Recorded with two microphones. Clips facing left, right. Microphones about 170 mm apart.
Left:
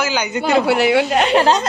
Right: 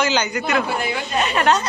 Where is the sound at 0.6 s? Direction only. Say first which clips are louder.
Left 10 dB; 80° left.